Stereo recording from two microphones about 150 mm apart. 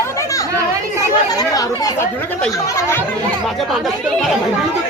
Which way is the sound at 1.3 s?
25° left (ahead or behind).